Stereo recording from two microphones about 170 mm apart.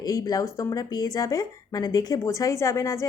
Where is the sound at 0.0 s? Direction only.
20° left (ahead or behind).